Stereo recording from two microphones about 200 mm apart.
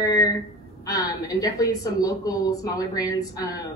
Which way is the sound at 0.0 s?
20° left (ahead or behind).